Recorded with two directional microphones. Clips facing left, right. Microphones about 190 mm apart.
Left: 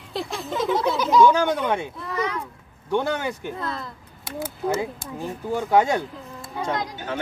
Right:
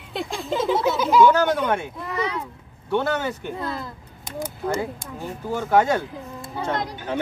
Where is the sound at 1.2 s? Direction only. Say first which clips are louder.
Right 1 dB; 15° left (ahead or behind).